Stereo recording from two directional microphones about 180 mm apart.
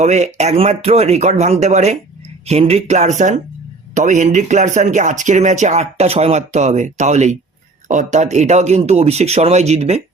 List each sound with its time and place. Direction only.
0.0 s speech: 40° right (ahead or behind)